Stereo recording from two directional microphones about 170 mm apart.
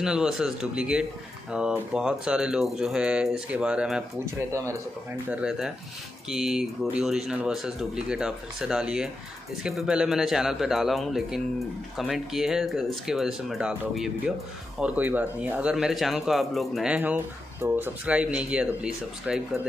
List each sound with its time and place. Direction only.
0.0 s speech: 5° right (ahead or behind)
4.4 s speech: 15° right (ahead or behind)
5.3 s speech: 5° right (ahead or behind)